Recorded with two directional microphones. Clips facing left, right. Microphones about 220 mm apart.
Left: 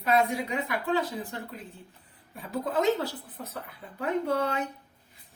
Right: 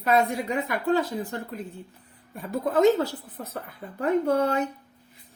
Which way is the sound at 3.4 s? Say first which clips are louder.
Right 4 dB; 50° right (ahead or behind).